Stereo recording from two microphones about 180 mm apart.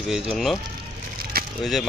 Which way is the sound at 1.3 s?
60° right (ahead or behind).